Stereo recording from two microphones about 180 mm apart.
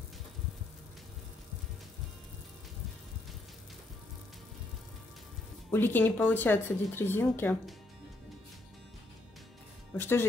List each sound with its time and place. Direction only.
5.7 s speech: 10° left (ahead or behind)
9.9 s speech: 10° left (ahead or behind)